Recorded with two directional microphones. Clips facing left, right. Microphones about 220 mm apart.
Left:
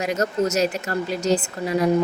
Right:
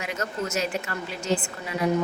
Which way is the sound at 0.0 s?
40° left (ahead or behind).